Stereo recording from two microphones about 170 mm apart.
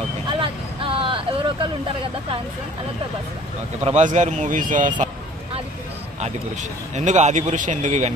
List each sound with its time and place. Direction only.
0.4 s vehicle: 30° right (ahead or behind)
3.8 s a man's voice: 45° right (ahead or behind)
7.1 s a man's voice: 45° right (ahead or behind)